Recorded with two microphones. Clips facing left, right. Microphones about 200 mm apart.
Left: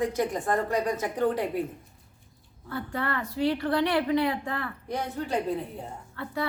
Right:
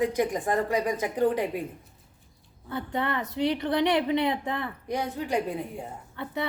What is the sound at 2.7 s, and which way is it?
A woman's voice, 20° right (ahead or behind).